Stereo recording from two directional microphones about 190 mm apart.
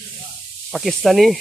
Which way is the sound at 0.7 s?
Centre (ahead or behind).